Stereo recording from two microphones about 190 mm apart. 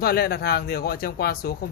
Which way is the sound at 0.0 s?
55° left (ahead or behind).